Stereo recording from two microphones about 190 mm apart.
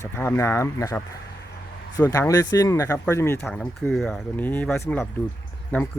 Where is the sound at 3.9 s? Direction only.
Centre (ahead or behind).